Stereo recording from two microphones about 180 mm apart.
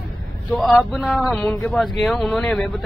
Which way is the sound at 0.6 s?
Centre (ahead or behind).